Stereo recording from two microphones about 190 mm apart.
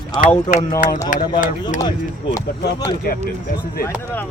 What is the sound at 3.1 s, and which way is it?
Speech, 50° left (ahead or behind).